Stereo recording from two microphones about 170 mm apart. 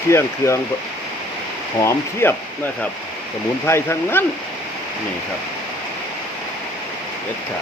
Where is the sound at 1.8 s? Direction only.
15° left (ahead or behind).